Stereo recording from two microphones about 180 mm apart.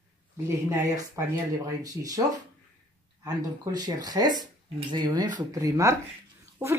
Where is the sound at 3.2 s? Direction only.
20° right (ahead or behind).